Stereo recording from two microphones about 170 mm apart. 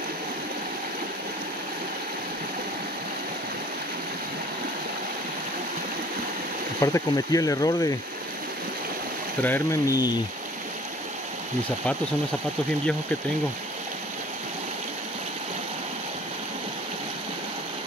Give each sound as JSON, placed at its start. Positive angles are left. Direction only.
{"t": 6.8, "sound": "speech", "side_deg": 20}
{"t": 9.4, "sound": "speech", "side_deg": 15}